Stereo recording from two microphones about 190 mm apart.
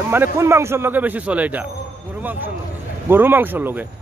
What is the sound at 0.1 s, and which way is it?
Speech, 15° right (ahead or behind).